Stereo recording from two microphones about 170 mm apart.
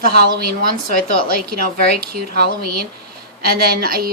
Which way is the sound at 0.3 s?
60° right (ahead or behind).